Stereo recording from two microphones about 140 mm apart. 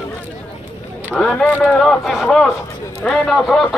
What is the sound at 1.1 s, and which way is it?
Speech, 5° left (ahead or behind).